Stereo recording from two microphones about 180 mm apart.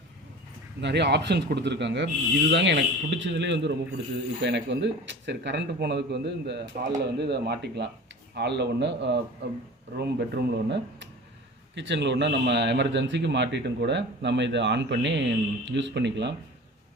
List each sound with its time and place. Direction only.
0.8 s speech: 75° right (ahead or behind)
10.0 s speech: 65° right (ahead or behind)
11.7 s speech: 85° right